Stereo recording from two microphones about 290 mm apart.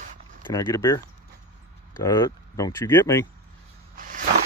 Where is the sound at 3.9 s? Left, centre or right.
Right.